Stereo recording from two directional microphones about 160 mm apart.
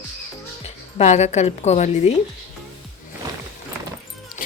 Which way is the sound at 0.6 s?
45° left (ahead or behind).